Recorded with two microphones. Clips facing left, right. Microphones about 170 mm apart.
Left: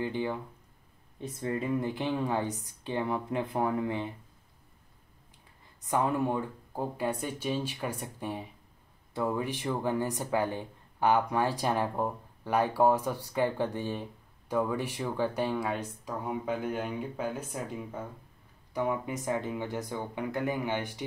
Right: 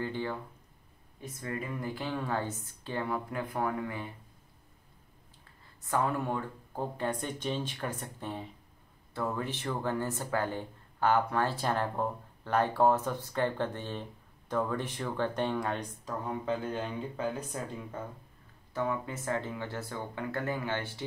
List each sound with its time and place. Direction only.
0.0 s speech: 15° left (ahead or behind)
1.2 s speech: 25° left (ahead or behind)
5.9 s speech: 15° left (ahead or behind)